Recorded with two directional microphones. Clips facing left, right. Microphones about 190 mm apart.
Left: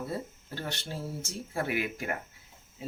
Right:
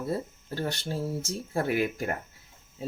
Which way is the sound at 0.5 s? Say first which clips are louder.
Right 6 dB; 40° right (ahead or behind).